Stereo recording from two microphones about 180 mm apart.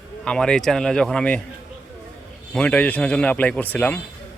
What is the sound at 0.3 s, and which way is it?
Speech, 5° left (ahead or behind).